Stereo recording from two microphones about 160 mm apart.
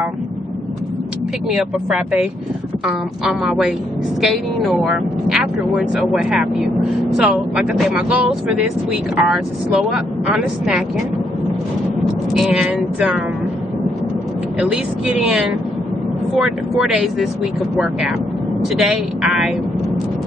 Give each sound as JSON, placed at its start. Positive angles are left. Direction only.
{"t": 1.5, "sound": "speech", "side_deg": -5}
{"t": 12.4, "sound": "speech", "side_deg": -5}
{"t": 15.2, "sound": "speech", "side_deg": -5}
{"t": 18.8, "sound": "speech", "side_deg": -5}